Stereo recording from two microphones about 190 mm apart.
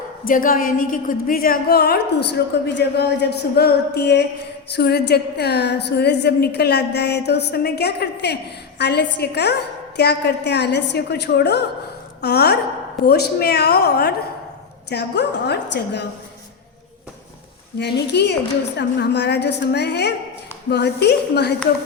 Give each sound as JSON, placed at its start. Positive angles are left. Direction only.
{"t": 0.3, "sound": "a woman's voice", "side_deg": 45}
{"t": 17.7, "sound": "a woman's voice", "side_deg": 60}